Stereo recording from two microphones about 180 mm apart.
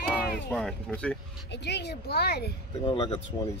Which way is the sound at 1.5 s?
70° left (ahead or behind).